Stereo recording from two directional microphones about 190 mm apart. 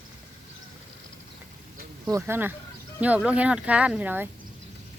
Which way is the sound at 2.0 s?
15° right (ahead or behind).